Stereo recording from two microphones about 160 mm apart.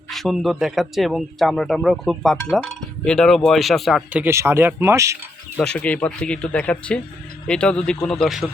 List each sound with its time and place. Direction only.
0.1 s a man's voice: centre (ahead or behind)
4.2 s speech: 15° right (ahead or behind)
5.5 s a man's voice: 5° left (ahead or behind)